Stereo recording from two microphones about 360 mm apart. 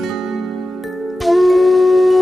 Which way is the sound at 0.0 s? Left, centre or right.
Centre.